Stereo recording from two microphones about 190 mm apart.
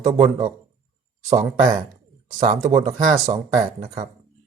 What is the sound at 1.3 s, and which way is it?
Speech, 40° right (ahead or behind).